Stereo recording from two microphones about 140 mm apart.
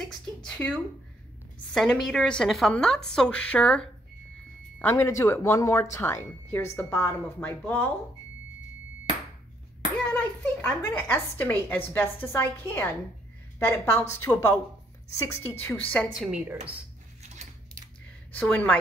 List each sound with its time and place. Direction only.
0.4 s a woman's voice: 5° left (ahead or behind)
4.7 s speech: 20° left (ahead or behind)
10.0 s speech: 10° left (ahead or behind)
16.2 s a woman's voice: 5° right (ahead or behind)
18.3 s speech: 10° left (ahead or behind)